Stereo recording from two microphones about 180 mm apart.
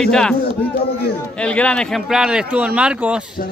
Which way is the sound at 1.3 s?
5° left (ahead or behind).